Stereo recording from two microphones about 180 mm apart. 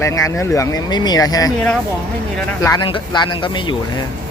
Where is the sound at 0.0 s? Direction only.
15° left (ahead or behind).